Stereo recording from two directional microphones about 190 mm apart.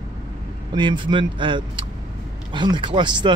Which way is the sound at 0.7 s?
25° right (ahead or behind).